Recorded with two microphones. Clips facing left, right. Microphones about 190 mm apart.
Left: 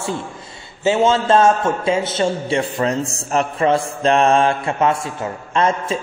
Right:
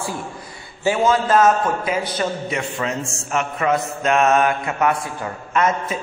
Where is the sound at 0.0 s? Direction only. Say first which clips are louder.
Left 3 dB; 25° left (ahead or behind).